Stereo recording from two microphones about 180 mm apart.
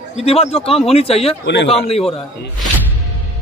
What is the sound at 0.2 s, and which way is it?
Speech, 35° left (ahead or behind).